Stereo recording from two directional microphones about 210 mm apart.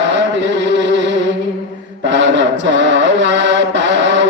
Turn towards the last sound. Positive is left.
turn(degrees=-60)  # may be behind; listen again after turning